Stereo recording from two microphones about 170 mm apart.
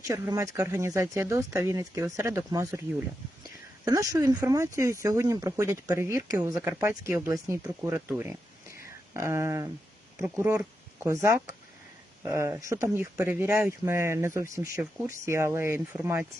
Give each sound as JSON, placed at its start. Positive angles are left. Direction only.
{"t": 0.1, "sound": "speech", "side_deg": -20}
{"t": 3.8, "sound": "speech", "side_deg": -20}